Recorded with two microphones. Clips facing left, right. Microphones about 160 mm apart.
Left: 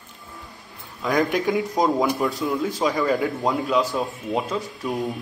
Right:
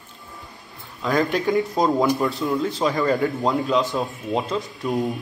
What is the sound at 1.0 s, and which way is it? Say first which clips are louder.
Speech: even; 15° left (ahead or behind).